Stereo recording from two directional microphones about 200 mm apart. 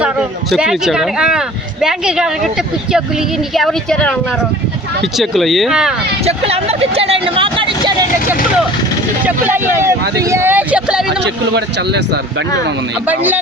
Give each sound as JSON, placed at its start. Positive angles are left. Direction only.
{"t": 0.5, "sound": "speech", "side_deg": 0}
{"t": 3.5, "sound": "speech", "side_deg": 0}
{"t": 5.1, "sound": "speech", "side_deg": 0}
{"t": 6.2, "sound": "a sound", "side_deg": -30}
{"t": 9.2, "sound": "speech", "side_deg": -10}
{"t": 11.2, "sound": "speech", "side_deg": -60}
{"t": 13.1, "sound": "speech", "side_deg": -10}